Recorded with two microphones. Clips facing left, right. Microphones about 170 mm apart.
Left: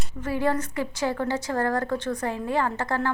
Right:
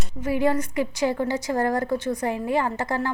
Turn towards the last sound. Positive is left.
turn(degrees=-10)  # may be behind; listen again after turning